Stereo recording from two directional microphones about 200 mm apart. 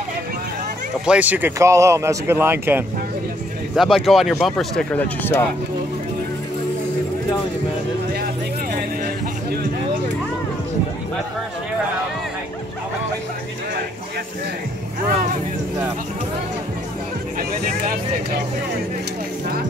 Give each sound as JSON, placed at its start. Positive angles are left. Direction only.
{"t": 1.0, "sound": "speech", "side_deg": -5}
{"t": 8.7, "sound": "music", "side_deg": -45}